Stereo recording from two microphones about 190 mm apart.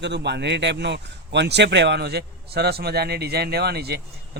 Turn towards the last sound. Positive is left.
turn(degrees=-60)  # may be behind; listen again after turning